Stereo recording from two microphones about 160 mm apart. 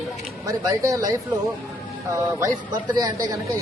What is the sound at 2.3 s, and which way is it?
Speech, 25° right (ahead or behind).